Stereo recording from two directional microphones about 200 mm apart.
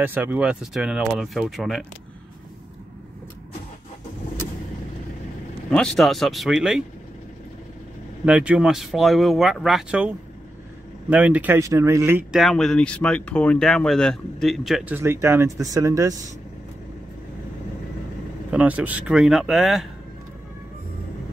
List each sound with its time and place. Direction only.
0.0 s speech: 10° right (ahead or behind)
5.7 s speech: 5° left (ahead or behind)
8.3 s speech: 5° right (ahead or behind)
18.5 s speech: 5° right (ahead or behind)